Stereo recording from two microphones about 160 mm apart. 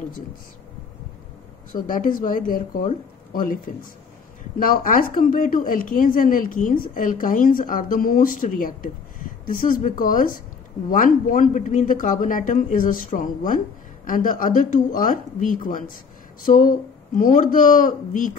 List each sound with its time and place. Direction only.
1.7 s a woman's voice: 55° left (ahead or behind)